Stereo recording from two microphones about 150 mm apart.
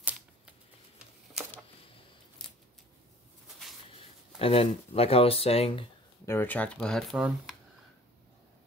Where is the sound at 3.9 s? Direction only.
40° left (ahead or behind).